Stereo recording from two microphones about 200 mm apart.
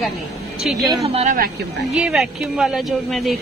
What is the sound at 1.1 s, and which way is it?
Speech, 35° right (ahead or behind).